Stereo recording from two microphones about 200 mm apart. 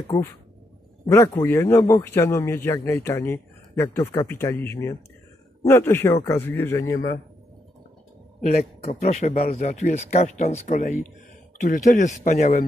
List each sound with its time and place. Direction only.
0.1 s a man's voice: 15° left (ahead or behind)
8.8 s speech: 35° left (ahead or behind)